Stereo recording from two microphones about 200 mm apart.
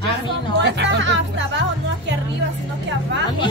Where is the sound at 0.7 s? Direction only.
60° right (ahead or behind).